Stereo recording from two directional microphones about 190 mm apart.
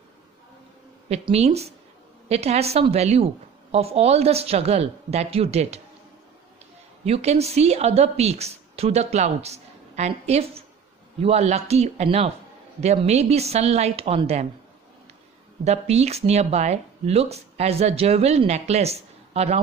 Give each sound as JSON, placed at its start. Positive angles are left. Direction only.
{"t": 1.0, "sound": "speech", "side_deg": -35}
{"t": 7.1, "sound": "speech", "side_deg": -35}
{"t": 15.6, "sound": "speech", "side_deg": -35}